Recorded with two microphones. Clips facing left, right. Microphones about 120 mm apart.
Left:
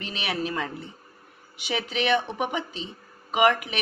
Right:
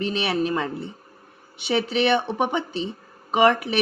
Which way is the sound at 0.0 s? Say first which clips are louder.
Right 7 dB; 30° right (ahead or behind).